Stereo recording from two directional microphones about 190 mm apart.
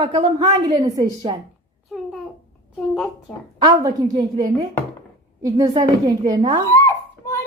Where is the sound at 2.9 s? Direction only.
Centre (ahead or behind).